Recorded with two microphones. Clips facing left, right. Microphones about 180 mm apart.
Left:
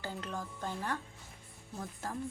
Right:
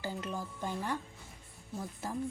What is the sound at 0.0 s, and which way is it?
Speech, 10° right (ahead or behind).